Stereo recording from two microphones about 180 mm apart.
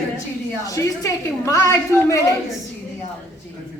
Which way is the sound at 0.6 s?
20° left (ahead or behind).